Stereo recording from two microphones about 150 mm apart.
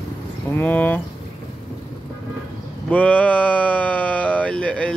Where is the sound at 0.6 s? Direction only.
10° left (ahead or behind).